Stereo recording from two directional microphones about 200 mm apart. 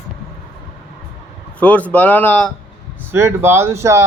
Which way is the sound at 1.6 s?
5° left (ahead or behind).